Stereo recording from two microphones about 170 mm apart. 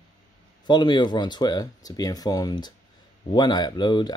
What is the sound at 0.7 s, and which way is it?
Speech, 25° left (ahead or behind).